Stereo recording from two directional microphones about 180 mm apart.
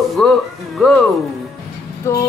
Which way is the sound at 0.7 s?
Centre (ahead or behind).